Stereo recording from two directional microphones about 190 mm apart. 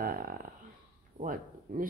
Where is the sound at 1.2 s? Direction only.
45° right (ahead or behind).